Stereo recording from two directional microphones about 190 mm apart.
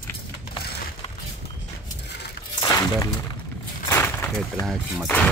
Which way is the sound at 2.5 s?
20° left (ahead or behind).